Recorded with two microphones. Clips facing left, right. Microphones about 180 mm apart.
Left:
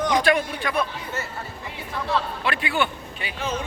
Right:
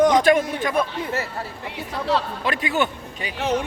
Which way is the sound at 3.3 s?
75° right (ahead or behind).